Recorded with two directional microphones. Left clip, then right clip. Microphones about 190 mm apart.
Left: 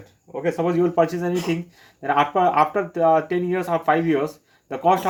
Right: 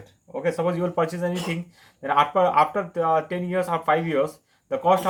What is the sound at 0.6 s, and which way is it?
Speech, 25° left (ahead or behind).